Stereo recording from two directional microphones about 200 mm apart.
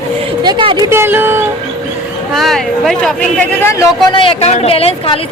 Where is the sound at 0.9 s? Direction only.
10° right (ahead or behind).